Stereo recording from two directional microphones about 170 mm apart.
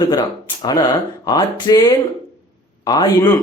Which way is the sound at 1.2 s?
25° left (ahead or behind).